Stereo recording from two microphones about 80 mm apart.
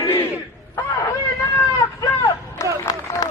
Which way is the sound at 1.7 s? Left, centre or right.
Left.